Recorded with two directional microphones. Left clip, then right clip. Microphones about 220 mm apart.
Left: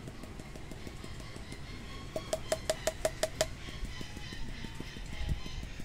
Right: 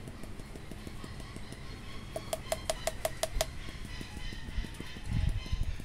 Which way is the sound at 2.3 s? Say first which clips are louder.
Left 1 dB; 5° right (ahead or behind).